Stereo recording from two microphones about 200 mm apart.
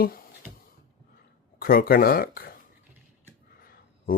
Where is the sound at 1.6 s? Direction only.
45° left (ahead or behind).